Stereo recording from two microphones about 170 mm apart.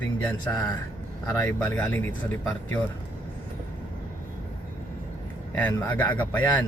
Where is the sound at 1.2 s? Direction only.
10° left (ahead or behind).